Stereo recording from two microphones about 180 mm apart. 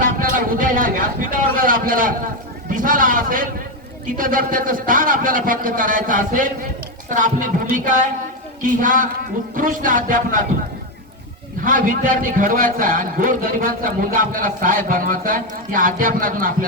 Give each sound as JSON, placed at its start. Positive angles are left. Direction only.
{"t": 0.0, "sound": "a man's voice", "side_deg": -50}
{"t": 11.6, "sound": "a man's voice", "side_deg": -50}